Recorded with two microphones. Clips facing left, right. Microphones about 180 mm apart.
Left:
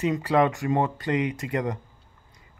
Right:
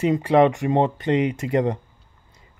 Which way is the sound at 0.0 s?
25° right (ahead or behind).